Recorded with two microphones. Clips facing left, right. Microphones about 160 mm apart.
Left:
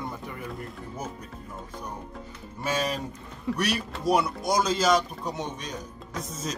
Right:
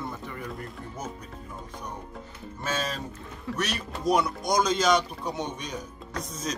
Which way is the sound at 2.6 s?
15° left (ahead or behind).